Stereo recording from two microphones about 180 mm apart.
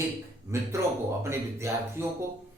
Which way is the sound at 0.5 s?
15° right (ahead or behind).